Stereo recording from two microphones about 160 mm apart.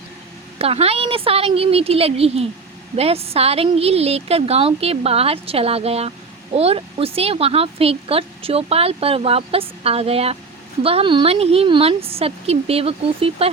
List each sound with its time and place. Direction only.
0.6 s a woman's voice: 40° right (ahead or behind)